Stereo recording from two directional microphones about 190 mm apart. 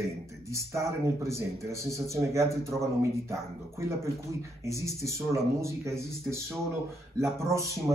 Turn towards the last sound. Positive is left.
turn(degrees=-15)  # may be behind; listen again after turning